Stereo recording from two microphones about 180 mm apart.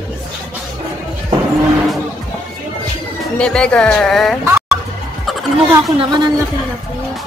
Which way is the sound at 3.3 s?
5° left (ahead or behind).